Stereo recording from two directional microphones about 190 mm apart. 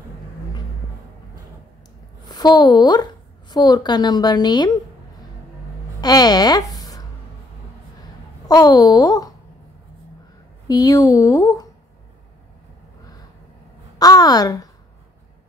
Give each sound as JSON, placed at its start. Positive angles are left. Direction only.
{"t": 2.2, "sound": "speech", "side_deg": 20}
{"t": 5.9, "sound": "speech", "side_deg": 20}
{"t": 8.5, "sound": "speech", "side_deg": 20}
{"t": 10.7, "sound": "speech", "side_deg": 20}
{"t": 13.9, "sound": "a sound", "side_deg": 20}